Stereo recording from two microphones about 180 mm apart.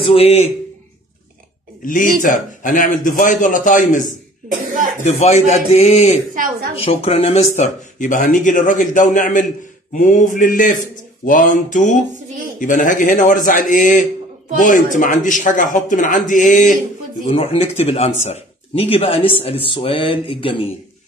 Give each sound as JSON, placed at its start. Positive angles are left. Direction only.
{"t": 0.0, "sound": "speech", "side_deg": 35}
{"t": 1.8, "sound": "speech", "side_deg": 50}
{"t": 5.0, "sound": "speech", "side_deg": 40}
{"t": 6.3, "sound": "a woman's voice", "side_deg": -50}
{"t": 6.8, "sound": "speech", "side_deg": 35}
{"t": 17.3, "sound": "speech", "side_deg": 35}